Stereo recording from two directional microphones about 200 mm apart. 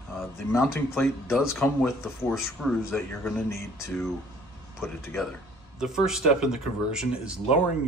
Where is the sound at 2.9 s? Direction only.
5° left (ahead or behind).